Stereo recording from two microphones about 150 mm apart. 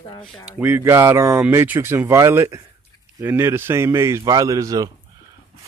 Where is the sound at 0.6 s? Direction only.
15° right (ahead or behind).